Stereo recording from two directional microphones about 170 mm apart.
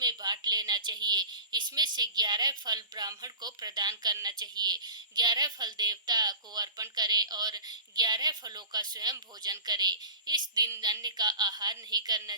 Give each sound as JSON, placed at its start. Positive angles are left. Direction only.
{"t": 0.0, "sound": "a woman's voice", "side_deg": -25}